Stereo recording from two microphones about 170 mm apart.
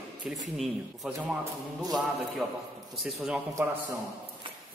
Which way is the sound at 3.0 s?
Centre (ahead or behind).